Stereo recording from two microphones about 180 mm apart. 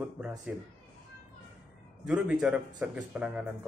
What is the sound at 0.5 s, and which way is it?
Speech, 5° right (ahead or behind).